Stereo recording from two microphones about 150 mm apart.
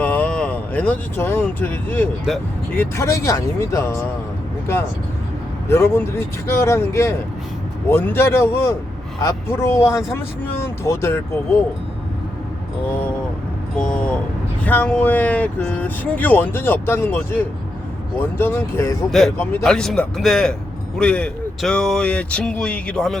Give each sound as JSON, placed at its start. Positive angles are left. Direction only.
{"t": 0.0, "sound": "speech", "side_deg": 10}
{"t": 5.6, "sound": "speech", "side_deg": 15}
{"t": 13.7, "sound": "a man's voice", "side_deg": 5}
{"t": 19.6, "sound": "a man's voice", "side_deg": 5}